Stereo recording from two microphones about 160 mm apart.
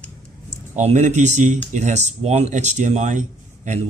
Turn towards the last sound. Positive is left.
turn(degrees=-50)  # may be behind; listen again after turning